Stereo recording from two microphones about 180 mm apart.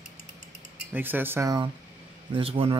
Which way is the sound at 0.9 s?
10° right (ahead or behind).